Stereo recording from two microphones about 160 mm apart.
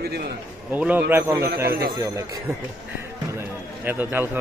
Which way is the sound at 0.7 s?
10° right (ahead or behind).